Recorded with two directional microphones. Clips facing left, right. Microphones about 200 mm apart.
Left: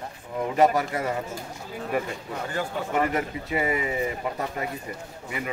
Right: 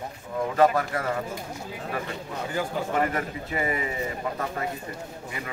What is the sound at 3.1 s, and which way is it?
Speech, 15° left (ahead or behind).